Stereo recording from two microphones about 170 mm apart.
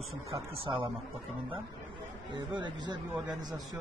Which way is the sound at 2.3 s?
25° right (ahead or behind).